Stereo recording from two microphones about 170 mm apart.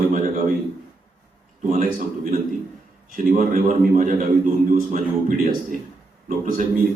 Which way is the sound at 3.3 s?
45° right (ahead or behind).